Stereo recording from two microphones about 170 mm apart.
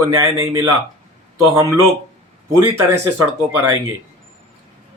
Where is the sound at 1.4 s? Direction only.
20° right (ahead or behind).